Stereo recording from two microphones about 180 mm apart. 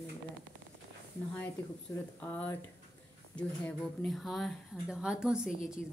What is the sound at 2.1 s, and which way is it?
A woman's voice, 10° left (ahead or behind).